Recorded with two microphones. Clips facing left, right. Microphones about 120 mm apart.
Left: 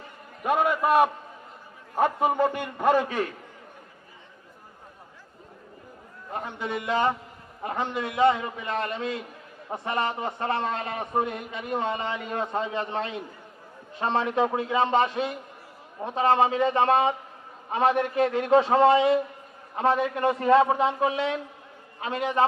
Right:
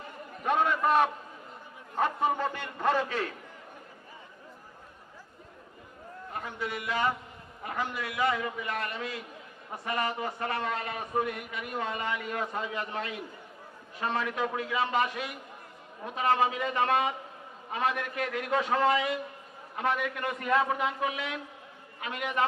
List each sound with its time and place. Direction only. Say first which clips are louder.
0.4 s a sound: left 3 dB; 10° left (ahead or behind)
2.0 s a man's voice: left 5 dB; 15° left (ahead or behind)
6.3 s a man's voice: left 5 dB; 25° left (ahead or behind)